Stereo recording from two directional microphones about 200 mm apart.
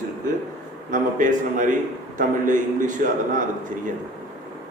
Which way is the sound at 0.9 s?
40° right (ahead or behind).